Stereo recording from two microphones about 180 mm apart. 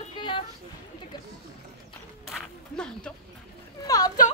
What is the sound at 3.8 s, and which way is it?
Speech, 20° left (ahead or behind).